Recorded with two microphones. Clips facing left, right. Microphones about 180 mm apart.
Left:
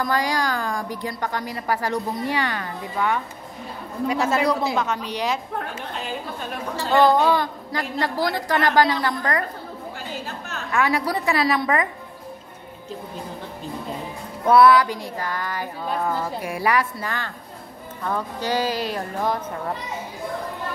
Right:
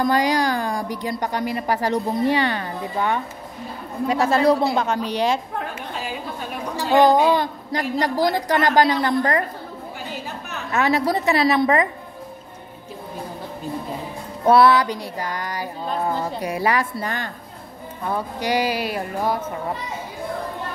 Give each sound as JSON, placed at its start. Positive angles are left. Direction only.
{"t": 0.0, "sound": "a woman's voice", "side_deg": -20}
{"t": 4.7, "sound": "speech", "side_deg": -30}
{"t": 6.8, "sound": "a woman's voice", "side_deg": -15}
{"t": 10.5, "sound": "a woman's voice", "side_deg": -25}
{"t": 14.4, "sound": "a woman's voice", "side_deg": -25}